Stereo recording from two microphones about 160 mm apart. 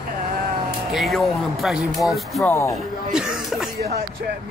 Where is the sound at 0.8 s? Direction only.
Centre (ahead or behind).